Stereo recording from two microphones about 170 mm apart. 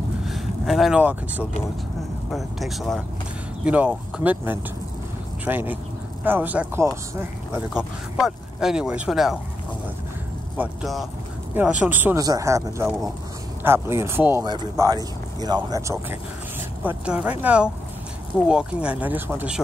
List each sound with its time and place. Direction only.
0.2 s speech: centre (ahead or behind)
10.6 s speech: centre (ahead or behind)
14.4 s speech: 25° right (ahead or behind)
16.8 s speech: 10° right (ahead or behind)